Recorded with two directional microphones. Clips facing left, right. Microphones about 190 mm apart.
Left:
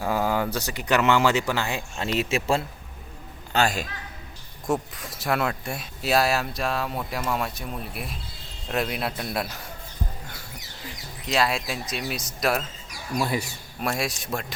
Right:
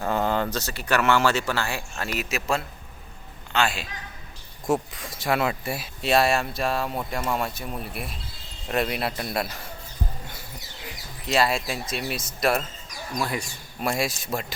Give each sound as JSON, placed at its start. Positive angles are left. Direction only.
{"t": 0.0, "sound": "speech", "side_deg": 5}
{"t": 3.5, "sound": "a man's voice", "side_deg": 40}
{"t": 4.6, "sound": "speech", "side_deg": 0}
{"t": 11.3, "sound": "speech", "side_deg": 0}